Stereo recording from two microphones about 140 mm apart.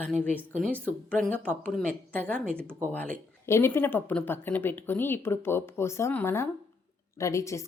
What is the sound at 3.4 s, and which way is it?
Speech, 20° left (ahead or behind).